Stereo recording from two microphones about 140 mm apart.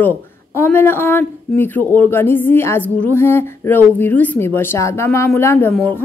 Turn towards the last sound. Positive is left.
turn(degrees=15)  # may be behind; listen again after turning